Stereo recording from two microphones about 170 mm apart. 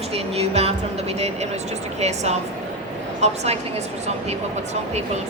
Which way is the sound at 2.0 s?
40° right (ahead or behind).